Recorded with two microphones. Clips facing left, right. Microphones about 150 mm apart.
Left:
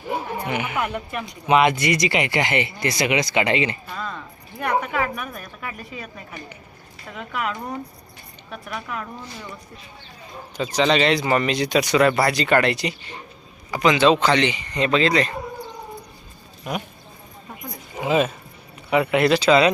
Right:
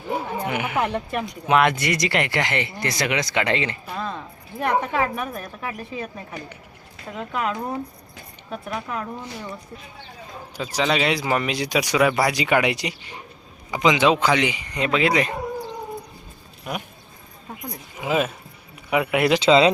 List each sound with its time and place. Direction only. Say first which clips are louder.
0.4 s speech: even; 5° right (ahead or behind)
0.8 s speech: right 2 dB; 30° right (ahead or behind)
1.5 s speech: left 2 dB; centre (ahead or behind)
3.8 s a sound: right 2 dB; 20° right (ahead or behind)
4.6 s a woman's voice: right 1 dB; 25° right (ahead or behind)
10.6 s speech: left 3 dB; 5° right (ahead or behind)
16.7 s speech: left 2 dB; centre (ahead or behind)
18.0 s speech: left 3 dB; 5° right (ahead or behind)
19.4 s a woman's voice: right 3 dB; 25° right (ahead or behind)